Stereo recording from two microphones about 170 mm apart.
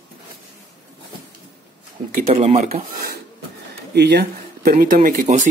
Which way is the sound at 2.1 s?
40° right (ahead or behind).